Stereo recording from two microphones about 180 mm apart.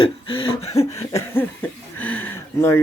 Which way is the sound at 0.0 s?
30° left (ahead or behind).